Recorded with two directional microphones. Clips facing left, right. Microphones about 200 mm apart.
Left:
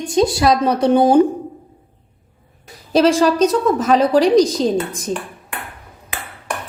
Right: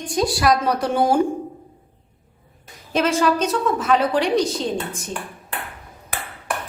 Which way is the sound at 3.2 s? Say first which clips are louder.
Left 5 dB; 40° left (ahead or behind).